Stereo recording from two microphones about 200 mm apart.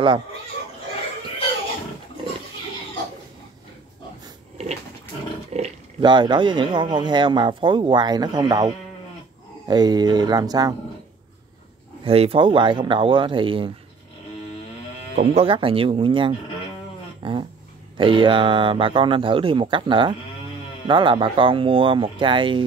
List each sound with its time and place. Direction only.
5.5 s speech: 30° right (ahead or behind)
12.0 s speech: 30° right (ahead or behind)
15.1 s speech: 30° right (ahead or behind)
17.2 s a sound: 25° right (ahead or behind)
17.9 s speech: 25° right (ahead or behind)